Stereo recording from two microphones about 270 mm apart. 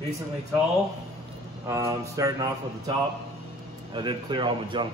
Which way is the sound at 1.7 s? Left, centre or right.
Centre.